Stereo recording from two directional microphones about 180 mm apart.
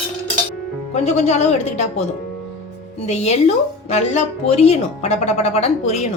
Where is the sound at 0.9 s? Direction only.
40° left (ahead or behind).